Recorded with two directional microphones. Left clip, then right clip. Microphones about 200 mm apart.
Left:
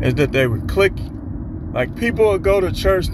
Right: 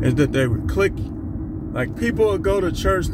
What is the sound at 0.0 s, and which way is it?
Speech, centre (ahead or behind).